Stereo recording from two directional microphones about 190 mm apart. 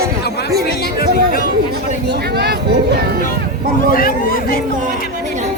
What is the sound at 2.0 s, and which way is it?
Speech, 60° right (ahead or behind).